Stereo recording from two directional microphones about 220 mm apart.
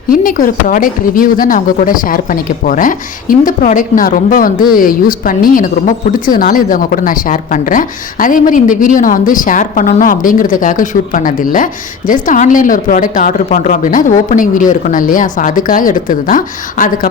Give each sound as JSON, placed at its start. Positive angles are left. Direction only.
{"t": 0.1, "sound": "speech", "side_deg": 40}